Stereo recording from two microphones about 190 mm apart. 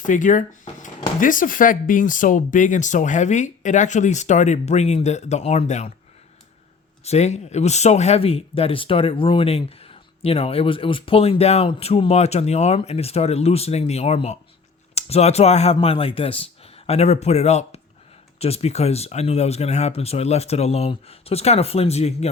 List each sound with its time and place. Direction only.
0.0 s speech: 40° left (ahead or behind)
7.0 s speech: 35° left (ahead or behind)